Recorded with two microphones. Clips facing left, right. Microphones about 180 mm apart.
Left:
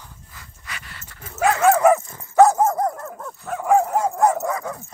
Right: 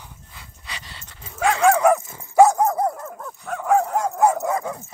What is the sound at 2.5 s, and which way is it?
Dog, centre (ahead or behind).